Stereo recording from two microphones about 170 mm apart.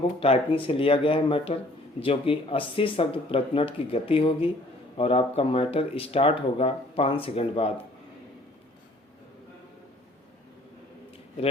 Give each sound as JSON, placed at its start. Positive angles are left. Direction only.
{"t": 0.2, "sound": "speech", "side_deg": 35}